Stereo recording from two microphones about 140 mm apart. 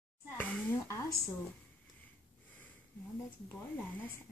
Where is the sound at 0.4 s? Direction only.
10° left (ahead or behind).